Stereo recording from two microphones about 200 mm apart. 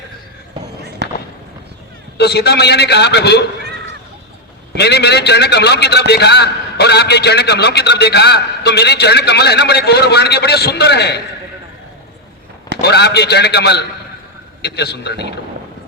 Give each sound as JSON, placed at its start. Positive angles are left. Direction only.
{"t": 2.1, "sound": "a man's voice", "side_deg": 55}
{"t": 4.7, "sound": "a man's voice", "side_deg": 55}
{"t": 12.8, "sound": "a man's voice", "side_deg": 55}